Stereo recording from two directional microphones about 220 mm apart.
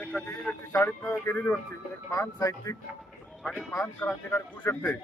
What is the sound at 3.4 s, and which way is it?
Speech, centre (ahead or behind).